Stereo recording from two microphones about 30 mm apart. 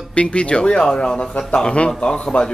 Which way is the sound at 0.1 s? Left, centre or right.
Left.